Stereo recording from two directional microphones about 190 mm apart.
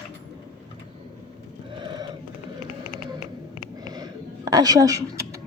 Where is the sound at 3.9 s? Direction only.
20° right (ahead or behind).